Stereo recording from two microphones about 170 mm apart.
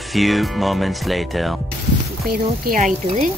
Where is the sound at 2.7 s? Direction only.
50° right (ahead or behind).